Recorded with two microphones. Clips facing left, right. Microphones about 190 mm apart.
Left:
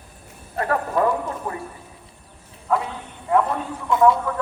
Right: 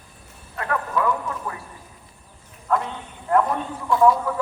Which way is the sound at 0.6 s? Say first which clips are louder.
Left 4 dB; 40° left (ahead or behind).